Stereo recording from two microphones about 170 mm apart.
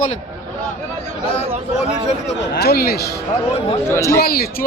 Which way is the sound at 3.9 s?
15° left (ahead or behind).